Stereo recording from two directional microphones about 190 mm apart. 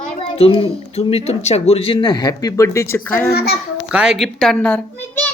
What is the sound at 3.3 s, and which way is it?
Speech, 55° left (ahead or behind).